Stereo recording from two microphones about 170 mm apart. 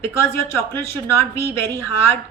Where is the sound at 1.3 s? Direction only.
15° left (ahead or behind).